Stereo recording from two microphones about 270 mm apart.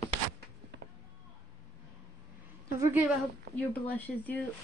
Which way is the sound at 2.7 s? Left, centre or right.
Centre.